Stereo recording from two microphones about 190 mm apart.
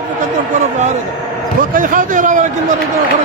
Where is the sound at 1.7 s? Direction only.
45° right (ahead or behind).